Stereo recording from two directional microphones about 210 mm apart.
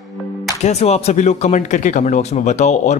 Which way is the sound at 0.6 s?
30° left (ahead or behind).